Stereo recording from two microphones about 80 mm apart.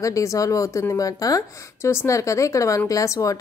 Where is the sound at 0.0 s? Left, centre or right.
Left.